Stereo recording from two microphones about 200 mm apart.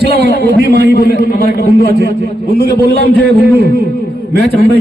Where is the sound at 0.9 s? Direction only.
50° left (ahead or behind).